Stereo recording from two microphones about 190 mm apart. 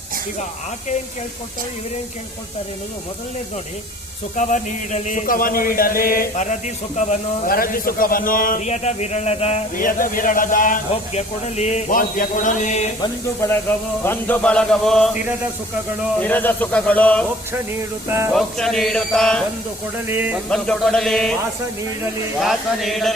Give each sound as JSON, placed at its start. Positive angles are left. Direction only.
{"t": 4.4, "sound": "speech", "side_deg": 40}
{"t": 9.7, "sound": "speech", "side_deg": 45}
{"t": 14.0, "sound": "speech", "side_deg": 10}
{"t": 16.2, "sound": "a man's voice", "side_deg": 10}
{"t": 18.1, "sound": "speech", "side_deg": -15}
{"t": 18.3, "sound": "speech", "side_deg": 0}
{"t": 20.1, "sound": "speech", "side_deg": -10}
{"t": 20.5, "sound": "speech", "side_deg": 5}
{"t": 22.4, "sound": "speech", "side_deg": 0}